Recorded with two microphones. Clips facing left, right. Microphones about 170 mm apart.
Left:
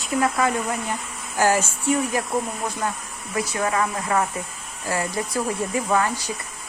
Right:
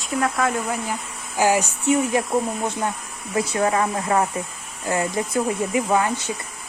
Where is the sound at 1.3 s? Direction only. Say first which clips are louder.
Right 1 dB; 15° right (ahead or behind).